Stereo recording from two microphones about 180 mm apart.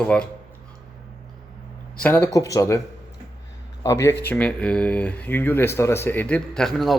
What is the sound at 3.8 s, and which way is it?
A man's voice, 15° left (ahead or behind).